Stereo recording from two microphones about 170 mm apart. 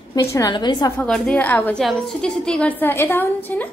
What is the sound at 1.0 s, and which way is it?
A woman's voice, 5° left (ahead or behind).